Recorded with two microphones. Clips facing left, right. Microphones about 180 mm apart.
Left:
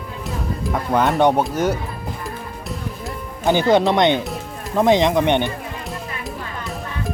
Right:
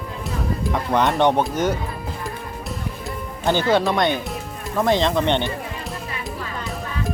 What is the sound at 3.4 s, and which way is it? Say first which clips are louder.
Speech: left 3 dB; 15° left (ahead or behind).